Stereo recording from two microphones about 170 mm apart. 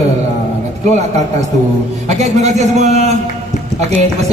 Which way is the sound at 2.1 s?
40° right (ahead or behind).